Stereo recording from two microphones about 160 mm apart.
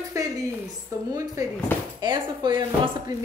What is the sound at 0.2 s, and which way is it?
A woman's voice, 20° right (ahead or behind).